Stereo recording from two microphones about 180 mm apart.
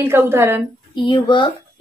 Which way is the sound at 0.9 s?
25° left (ahead or behind).